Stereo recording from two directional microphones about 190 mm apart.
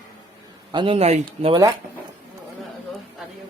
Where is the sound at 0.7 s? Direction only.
25° right (ahead or behind).